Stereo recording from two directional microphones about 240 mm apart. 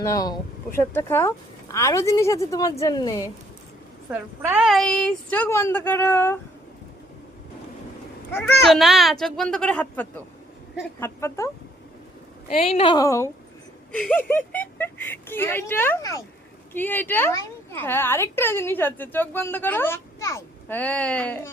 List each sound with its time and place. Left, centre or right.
0.0 s a woman's voice: centre
4.1 s a woman's voice: centre
8.3 s a child's voice: centre
12.5 s a woman's voice: left; by 21.5 s centre